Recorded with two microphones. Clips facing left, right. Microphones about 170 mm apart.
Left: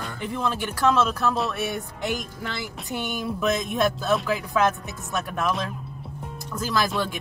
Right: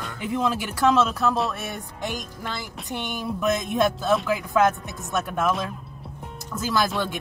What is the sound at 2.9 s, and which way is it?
Speech, 5° left (ahead or behind).